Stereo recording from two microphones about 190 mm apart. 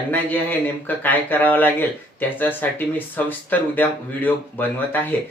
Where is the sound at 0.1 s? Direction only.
10° left (ahead or behind).